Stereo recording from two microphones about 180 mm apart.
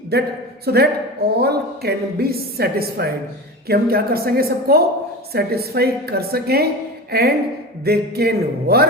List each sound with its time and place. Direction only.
0.1 s speech: 60° right (ahead or behind)